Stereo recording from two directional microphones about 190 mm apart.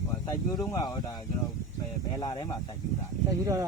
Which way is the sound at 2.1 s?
20° left (ahead or behind).